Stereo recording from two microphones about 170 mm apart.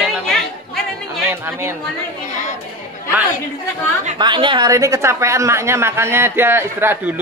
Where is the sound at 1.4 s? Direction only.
15° right (ahead or behind).